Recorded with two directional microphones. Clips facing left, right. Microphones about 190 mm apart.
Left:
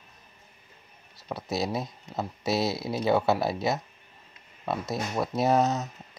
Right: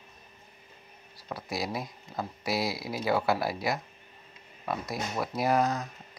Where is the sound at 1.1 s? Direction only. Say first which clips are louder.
Left 4 dB; 25° left (ahead or behind).